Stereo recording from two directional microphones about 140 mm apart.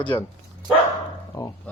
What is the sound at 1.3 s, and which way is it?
Speech, 30° left (ahead or behind).